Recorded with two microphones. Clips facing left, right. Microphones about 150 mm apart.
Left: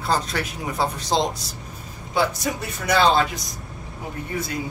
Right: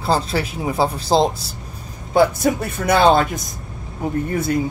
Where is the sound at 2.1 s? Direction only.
50° right (ahead or behind).